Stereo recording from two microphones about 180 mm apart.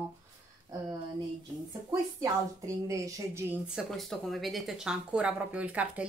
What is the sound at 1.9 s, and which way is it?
Speech, 20° right (ahead or behind).